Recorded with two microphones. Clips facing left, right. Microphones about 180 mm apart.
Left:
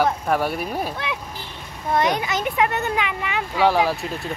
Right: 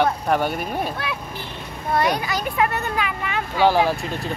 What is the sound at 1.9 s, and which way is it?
A child's voice, 20° left (ahead or behind).